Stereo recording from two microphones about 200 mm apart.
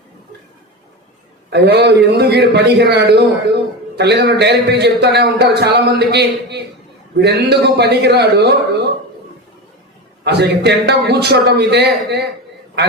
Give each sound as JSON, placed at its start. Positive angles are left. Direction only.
{"t": 1.5, "sound": "a man's voice", "side_deg": -55}
{"t": 10.2, "sound": "a man's voice", "side_deg": -55}